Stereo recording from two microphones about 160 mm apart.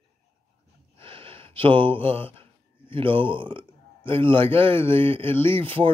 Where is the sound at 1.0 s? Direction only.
35° right (ahead or behind).